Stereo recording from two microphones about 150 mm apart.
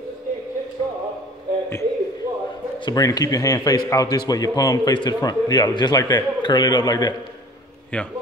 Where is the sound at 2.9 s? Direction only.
25° left (ahead or behind).